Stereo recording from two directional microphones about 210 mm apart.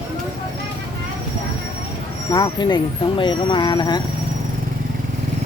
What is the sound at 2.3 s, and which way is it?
Speech, 20° left (ahead or behind).